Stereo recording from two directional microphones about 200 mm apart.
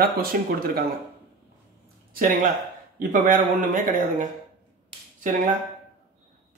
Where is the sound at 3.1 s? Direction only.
40° right (ahead or behind).